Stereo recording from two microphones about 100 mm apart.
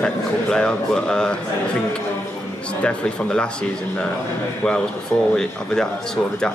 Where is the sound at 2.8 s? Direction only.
10° left (ahead or behind).